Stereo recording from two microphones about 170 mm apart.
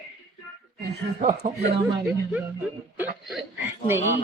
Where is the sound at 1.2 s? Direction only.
45° right (ahead or behind).